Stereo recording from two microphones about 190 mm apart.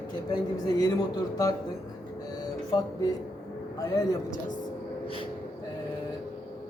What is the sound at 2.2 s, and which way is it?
Music, 20° left (ahead or behind).